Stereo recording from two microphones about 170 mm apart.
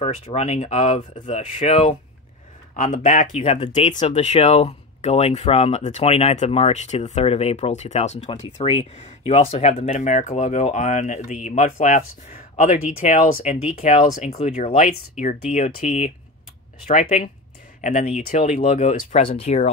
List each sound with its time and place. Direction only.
0.0 s speech: 45° left (ahead or behind)